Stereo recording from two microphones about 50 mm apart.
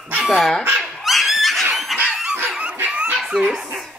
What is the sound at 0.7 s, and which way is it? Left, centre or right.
Dog, centre.